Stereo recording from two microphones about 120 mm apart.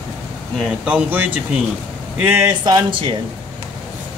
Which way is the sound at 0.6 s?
10° right (ahead or behind).